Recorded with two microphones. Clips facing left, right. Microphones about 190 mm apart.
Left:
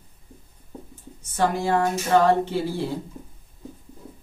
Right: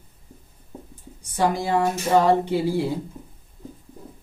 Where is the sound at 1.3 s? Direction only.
15° right (ahead or behind).